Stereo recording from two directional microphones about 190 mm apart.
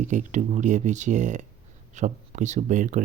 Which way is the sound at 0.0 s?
40° right (ahead or behind).